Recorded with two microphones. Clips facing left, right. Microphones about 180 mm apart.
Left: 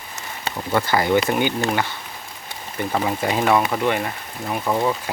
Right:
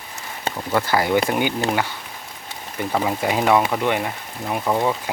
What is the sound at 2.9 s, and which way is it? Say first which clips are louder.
Speech: right 1 dB; 10° right (ahead or behind).